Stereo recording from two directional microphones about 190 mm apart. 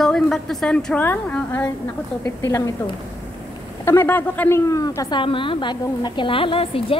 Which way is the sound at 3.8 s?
15° left (ahead or behind).